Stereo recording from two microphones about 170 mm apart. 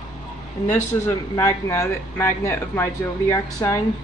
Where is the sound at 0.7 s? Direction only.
20° left (ahead or behind).